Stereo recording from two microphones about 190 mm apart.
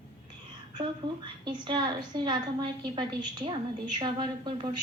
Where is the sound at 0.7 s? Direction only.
25° right (ahead or behind).